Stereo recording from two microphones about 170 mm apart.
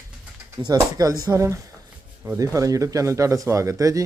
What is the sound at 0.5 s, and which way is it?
Speech, 20° right (ahead or behind).